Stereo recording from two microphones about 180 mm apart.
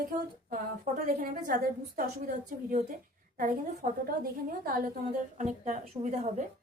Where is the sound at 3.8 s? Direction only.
45° right (ahead or behind).